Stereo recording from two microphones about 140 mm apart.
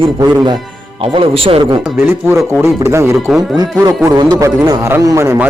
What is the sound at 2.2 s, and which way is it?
A man's voice, 20° right (ahead or behind).